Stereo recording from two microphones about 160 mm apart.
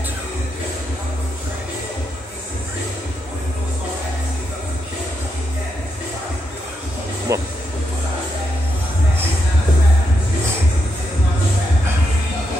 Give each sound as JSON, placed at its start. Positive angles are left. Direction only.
{"t": 7.3, "sound": "speech", "side_deg": -20}